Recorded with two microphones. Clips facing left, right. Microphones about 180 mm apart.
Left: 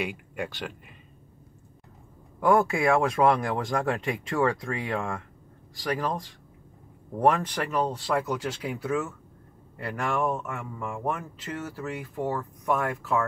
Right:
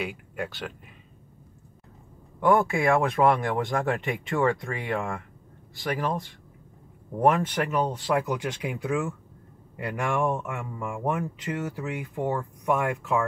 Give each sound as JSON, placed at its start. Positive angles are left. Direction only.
{"t": 0.0, "sound": "speech", "side_deg": 0}
{"t": 2.4, "sound": "speech", "side_deg": 0}